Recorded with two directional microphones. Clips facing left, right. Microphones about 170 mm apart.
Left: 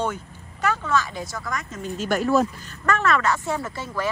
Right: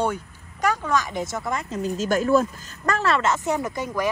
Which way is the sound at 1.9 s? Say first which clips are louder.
Right 1 dB; 45° right (ahead or behind).